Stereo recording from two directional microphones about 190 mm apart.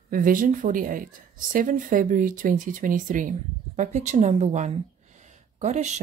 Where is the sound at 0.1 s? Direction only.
45° right (ahead or behind).